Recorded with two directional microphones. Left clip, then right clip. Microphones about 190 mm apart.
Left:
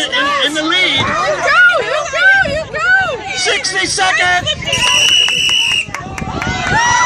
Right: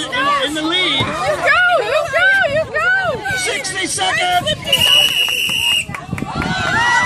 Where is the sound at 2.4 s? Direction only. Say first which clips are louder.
Left 1 dB; 50° left (ahead or behind).